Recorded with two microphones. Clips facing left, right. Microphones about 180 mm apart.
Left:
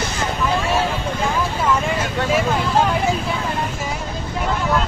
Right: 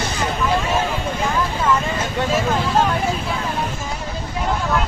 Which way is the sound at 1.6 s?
10° left (ahead or behind).